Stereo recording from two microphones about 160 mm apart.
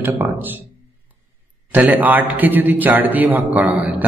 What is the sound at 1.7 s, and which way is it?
A man's voice, 10° right (ahead or behind).